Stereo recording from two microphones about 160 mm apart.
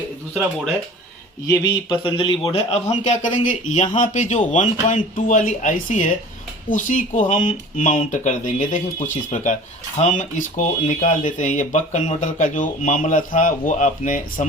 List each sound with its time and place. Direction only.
1.5 s a man's voice: 30° left (ahead or behind); by 14.4 s 55° left (ahead or behind)